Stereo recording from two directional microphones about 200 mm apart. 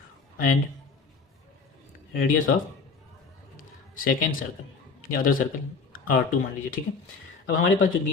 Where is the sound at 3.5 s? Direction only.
45° left (ahead or behind).